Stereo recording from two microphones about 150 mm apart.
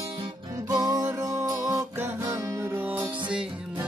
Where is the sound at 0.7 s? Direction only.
25° right (ahead or behind).